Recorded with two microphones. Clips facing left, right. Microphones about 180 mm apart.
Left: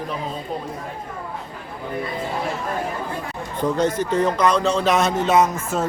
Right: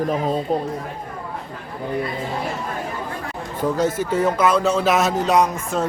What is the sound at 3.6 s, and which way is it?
A man's voice, 5° right (ahead or behind).